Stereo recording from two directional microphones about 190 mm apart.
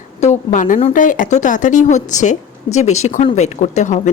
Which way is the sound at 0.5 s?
45° left (ahead or behind).